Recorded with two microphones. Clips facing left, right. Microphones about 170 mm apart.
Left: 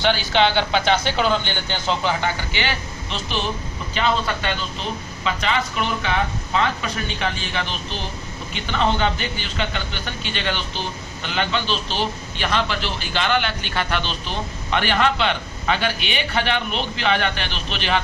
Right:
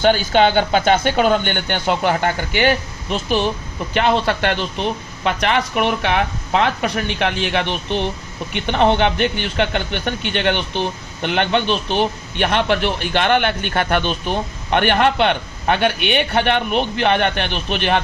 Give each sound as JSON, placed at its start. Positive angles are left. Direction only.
{"t": 0.0, "sound": "speech", "side_deg": -45}
{"t": 3.9, "sound": "a man's voice", "side_deg": -65}